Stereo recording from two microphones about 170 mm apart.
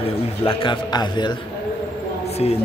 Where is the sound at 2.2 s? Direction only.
40° left (ahead or behind).